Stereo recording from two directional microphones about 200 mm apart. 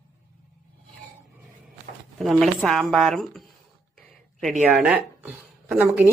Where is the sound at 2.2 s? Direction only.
Centre (ahead or behind).